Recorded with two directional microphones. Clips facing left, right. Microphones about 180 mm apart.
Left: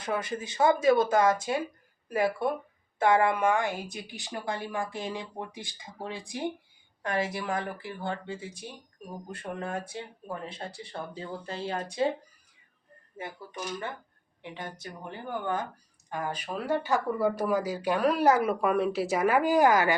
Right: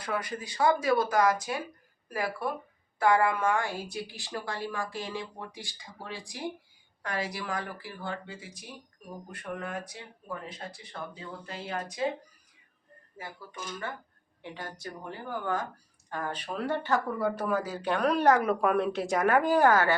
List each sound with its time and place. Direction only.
0.0 s speech: 25° left (ahead or behind)
13.1 s speech: 25° left (ahead or behind)